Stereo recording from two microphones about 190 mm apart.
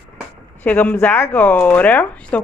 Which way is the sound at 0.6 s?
10° left (ahead or behind).